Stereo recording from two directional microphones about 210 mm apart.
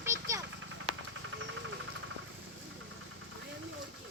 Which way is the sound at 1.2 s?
65° right (ahead or behind).